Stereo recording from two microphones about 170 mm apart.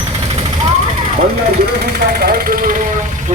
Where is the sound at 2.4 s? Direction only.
55° right (ahead or behind).